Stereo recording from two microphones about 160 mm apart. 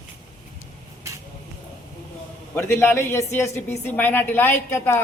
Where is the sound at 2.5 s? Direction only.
15° left (ahead or behind).